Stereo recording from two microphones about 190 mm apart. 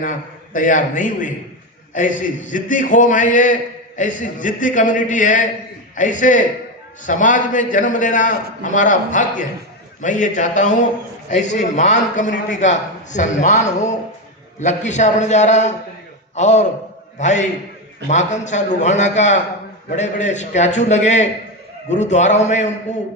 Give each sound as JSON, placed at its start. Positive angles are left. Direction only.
{"t": 0.0, "sound": "a man's voice", "side_deg": 45}